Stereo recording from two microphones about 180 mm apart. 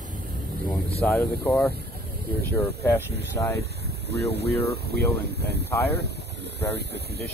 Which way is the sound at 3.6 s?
65° right (ahead or behind).